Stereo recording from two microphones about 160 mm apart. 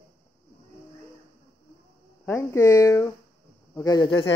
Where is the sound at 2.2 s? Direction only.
15° left (ahead or behind).